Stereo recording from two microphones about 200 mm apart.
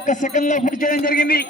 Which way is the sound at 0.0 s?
40° left (ahead or behind).